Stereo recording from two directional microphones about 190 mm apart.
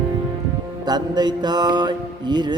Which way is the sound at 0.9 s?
20° right (ahead or behind).